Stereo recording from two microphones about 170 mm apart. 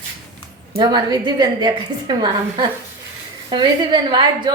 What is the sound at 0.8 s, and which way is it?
A woman's voice, 25° right (ahead or behind).